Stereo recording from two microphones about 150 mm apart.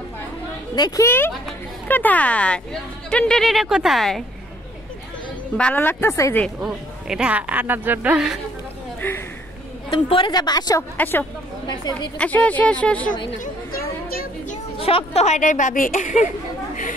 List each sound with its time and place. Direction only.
0.7 s a woman's voice: 25° left (ahead or behind); by 4.2 s centre (ahead or behind)
5.6 s speech: 10° left (ahead or behind)
6.6 s a woman's voice: 5° right (ahead or behind)
9.0 s speech: 15° left (ahead or behind)
9.8 s a woman's voice: 35° left (ahead or behind)
11.0 s speech: 15° left (ahead or behind)
11.6 s a woman's voice: 30° left (ahead or behind)
12.2 s speech: 10° left (ahead or behind)
13.4 s chatter: 75° left (ahead or behind)
14.8 s speech: 40° left (ahead or behind); by 16.3 s 60° left (ahead or behind)